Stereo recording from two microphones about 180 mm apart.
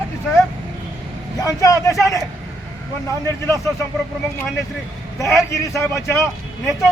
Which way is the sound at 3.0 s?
15° left (ahead or behind).